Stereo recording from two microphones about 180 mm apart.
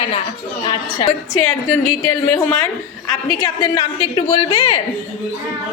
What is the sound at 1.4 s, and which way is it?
A woman's voice, 15° left (ahead or behind).